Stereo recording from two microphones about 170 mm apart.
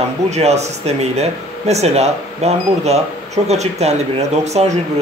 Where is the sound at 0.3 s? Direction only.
40° right (ahead or behind).